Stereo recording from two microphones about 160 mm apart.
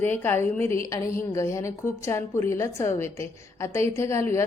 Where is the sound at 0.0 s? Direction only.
15° left (ahead or behind).